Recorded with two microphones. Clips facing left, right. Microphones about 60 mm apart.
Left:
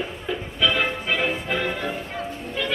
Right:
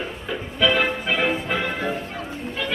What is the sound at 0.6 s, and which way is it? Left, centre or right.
Music, centre.